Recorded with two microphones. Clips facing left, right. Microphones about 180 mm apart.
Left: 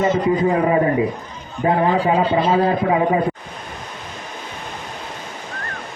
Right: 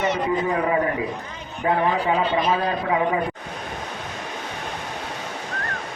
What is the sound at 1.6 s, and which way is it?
Speech, 30° left (ahead or behind).